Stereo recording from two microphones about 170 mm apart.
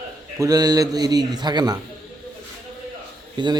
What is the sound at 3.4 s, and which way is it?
Speech, 25° right (ahead or behind).